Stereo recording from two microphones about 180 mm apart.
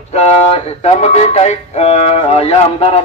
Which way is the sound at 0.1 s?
35° left (ahead or behind).